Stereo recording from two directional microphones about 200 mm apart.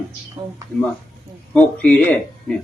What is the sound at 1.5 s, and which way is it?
Speech, 5° left (ahead or behind).